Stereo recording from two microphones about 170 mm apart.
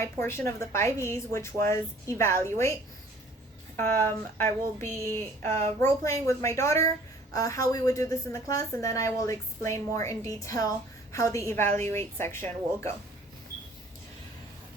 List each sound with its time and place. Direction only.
0.0 s a woman's voice: 15° left (ahead or behind)
3.8 s a woman's voice: 15° left (ahead or behind)